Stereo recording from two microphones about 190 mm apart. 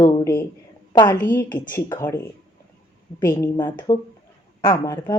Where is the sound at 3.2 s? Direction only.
15° left (ahead or behind).